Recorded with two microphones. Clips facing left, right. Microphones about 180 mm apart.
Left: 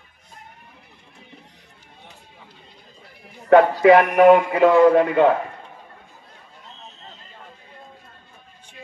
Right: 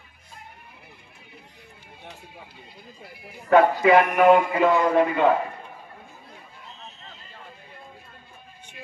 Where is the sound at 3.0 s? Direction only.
10° right (ahead or behind).